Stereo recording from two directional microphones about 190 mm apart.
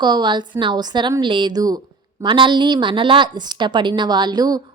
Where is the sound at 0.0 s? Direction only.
20° right (ahead or behind).